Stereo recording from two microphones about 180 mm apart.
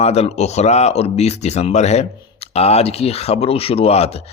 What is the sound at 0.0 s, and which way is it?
Speech, 35° left (ahead or behind).